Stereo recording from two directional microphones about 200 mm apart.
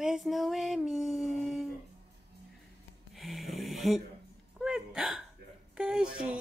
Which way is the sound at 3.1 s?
Centre (ahead or behind).